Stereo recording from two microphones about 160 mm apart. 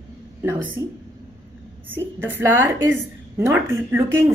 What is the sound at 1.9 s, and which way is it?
Speech, 10° right (ahead or behind).